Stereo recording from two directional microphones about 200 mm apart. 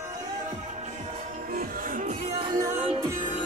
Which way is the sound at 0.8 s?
35° right (ahead or behind).